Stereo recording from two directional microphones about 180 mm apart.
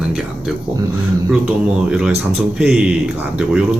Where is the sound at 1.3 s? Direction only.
5° right (ahead or behind).